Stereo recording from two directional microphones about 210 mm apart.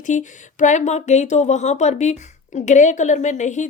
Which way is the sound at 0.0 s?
35° left (ahead or behind).